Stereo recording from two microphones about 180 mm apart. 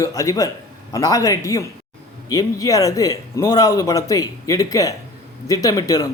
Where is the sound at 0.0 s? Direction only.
20° left (ahead or behind).